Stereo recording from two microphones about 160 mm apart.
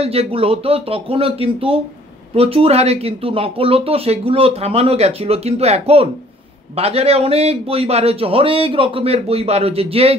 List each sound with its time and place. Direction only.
0.0 s speech: 40° right (ahead or behind)